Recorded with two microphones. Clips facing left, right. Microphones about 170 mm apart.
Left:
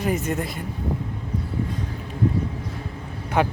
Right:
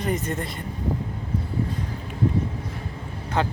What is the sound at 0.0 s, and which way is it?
Speech, 5° left (ahead or behind).